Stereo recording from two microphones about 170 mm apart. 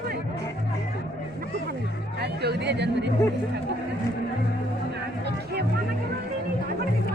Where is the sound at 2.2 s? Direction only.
75° right (ahead or behind).